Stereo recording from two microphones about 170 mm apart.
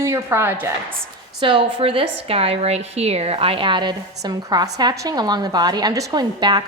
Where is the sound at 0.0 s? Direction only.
15° right (ahead or behind).